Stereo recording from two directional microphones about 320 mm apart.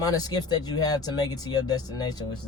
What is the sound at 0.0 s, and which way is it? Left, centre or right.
A man's voice, centre.